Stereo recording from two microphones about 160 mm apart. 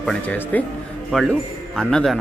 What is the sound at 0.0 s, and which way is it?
Speech, centre (ahead or behind).